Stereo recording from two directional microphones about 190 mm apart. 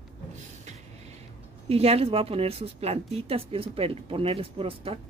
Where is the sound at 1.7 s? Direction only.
30° right (ahead or behind).